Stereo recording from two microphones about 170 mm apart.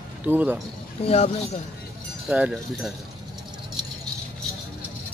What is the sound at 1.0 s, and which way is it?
Speech, 35° left (ahead or behind).